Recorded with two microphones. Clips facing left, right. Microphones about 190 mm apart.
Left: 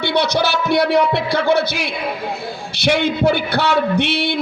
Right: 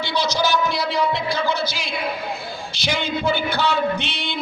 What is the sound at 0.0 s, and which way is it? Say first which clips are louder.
A man's voice: left 5 dB; 60° left (ahead or behind).